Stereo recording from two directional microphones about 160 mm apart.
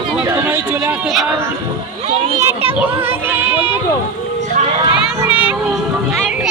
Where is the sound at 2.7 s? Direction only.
15° right (ahead or behind).